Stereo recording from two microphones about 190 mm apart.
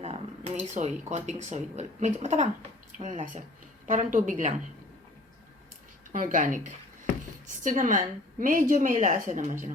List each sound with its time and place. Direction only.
0.0 s a woman's voice: 35° right (ahead or behind)
6.1 s a woman's voice: 45° right (ahead or behind)